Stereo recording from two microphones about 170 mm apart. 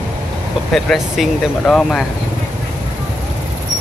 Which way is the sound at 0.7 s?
Centre (ahead or behind).